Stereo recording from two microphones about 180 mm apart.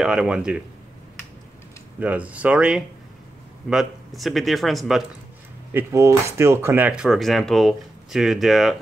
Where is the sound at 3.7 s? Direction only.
Centre (ahead or behind).